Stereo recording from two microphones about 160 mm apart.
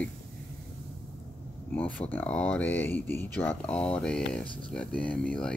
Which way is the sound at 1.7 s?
10° left (ahead or behind).